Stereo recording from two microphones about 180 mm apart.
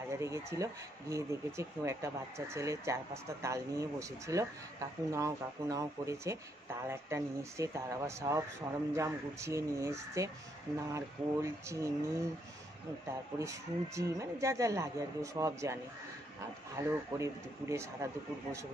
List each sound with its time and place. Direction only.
0.2 s speech: 15° right (ahead or behind)
13.4 s speech: 15° right (ahead or behind)